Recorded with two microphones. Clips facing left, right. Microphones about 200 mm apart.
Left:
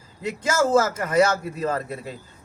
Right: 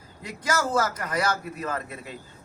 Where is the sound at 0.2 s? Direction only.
25° left (ahead or behind).